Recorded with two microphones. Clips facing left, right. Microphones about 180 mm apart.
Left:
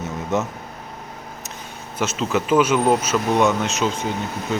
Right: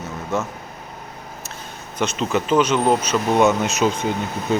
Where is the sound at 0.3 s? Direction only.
20° left (ahead or behind).